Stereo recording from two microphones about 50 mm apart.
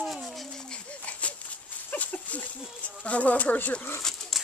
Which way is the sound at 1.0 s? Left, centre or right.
Left.